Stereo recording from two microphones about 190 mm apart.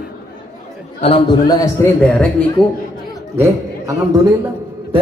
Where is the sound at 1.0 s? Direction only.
30° left (ahead or behind).